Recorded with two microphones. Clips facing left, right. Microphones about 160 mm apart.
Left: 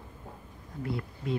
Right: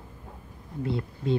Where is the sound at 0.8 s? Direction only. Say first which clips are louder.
Right 5 dB; 25° right (ahead or behind).